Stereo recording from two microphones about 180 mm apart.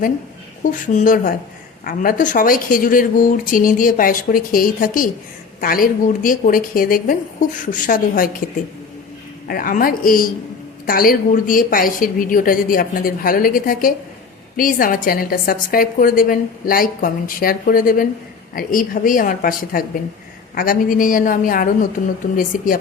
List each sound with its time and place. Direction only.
0.9 s a woman's voice: 45° left (ahead or behind)
9.5 s a woman's voice: 50° left (ahead or behind)